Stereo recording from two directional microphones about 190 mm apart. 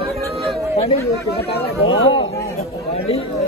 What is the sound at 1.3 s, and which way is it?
Speech, 30° left (ahead or behind).